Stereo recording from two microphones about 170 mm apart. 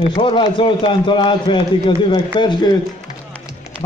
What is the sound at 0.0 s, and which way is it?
A man's voice, 30° left (ahead or behind).